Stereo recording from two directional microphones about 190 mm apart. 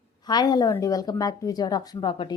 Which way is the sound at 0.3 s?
20° left (ahead or behind).